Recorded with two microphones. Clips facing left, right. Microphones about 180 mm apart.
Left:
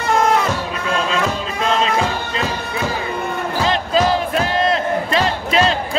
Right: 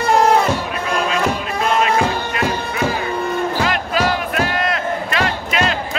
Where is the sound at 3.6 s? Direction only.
25° left (ahead or behind).